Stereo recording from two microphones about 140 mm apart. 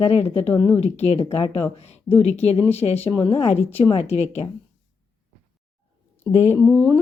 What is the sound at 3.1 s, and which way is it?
A woman's voice, 35° left (ahead or behind).